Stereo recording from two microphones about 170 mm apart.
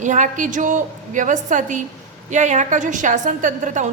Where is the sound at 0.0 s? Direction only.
45° right (ahead or behind).